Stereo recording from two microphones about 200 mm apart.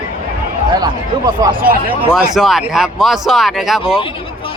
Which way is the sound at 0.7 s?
20° right (ahead or behind).